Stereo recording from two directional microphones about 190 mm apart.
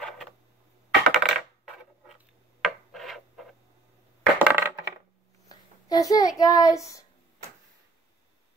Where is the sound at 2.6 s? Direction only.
Centre (ahead or behind).